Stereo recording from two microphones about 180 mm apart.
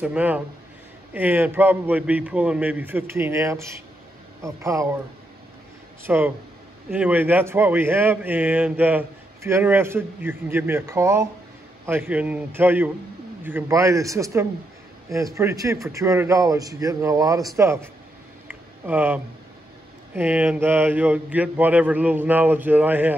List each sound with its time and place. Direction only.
0.0 s speech: 10° right (ahead or behind)
6.0 s speech: 10° right (ahead or behind)
18.5 s a sound: 10° right (ahead or behind)
20.2 s speech: 10° right (ahead or behind)